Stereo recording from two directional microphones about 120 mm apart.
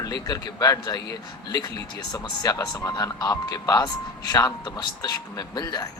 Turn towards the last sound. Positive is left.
turn(degrees=35)  # may be behind; listen again after turning